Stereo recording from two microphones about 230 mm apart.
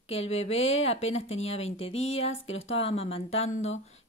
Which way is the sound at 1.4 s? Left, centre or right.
Left.